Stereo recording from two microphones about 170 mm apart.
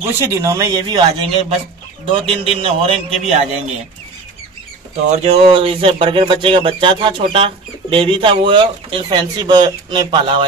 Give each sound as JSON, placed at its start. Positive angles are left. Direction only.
{"t": 0.0, "sound": "speech", "side_deg": -15}
{"t": 5.1, "sound": "speech", "side_deg": -40}